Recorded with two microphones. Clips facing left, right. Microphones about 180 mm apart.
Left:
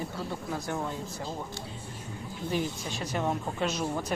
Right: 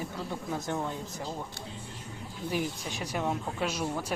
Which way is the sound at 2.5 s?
10° right (ahead or behind).